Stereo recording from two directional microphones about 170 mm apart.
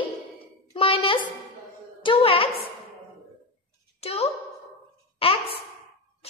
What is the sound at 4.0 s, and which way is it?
Speech, 35° left (ahead or behind).